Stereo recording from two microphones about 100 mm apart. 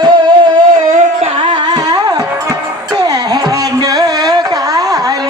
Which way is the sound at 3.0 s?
40° right (ahead or behind).